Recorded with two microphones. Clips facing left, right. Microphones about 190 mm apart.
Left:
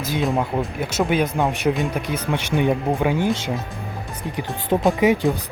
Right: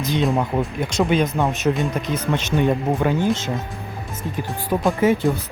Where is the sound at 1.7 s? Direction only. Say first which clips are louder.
Right 1 dB; centre (ahead or behind).